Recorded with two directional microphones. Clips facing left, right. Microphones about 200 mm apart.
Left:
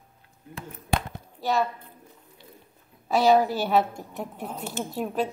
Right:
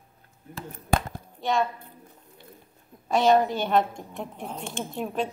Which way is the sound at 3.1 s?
5° left (ahead or behind).